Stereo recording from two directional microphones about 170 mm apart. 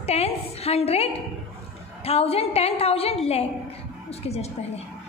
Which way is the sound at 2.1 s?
35° left (ahead or behind).